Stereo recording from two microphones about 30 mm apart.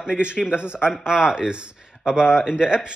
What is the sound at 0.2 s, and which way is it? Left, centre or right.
Speech, right.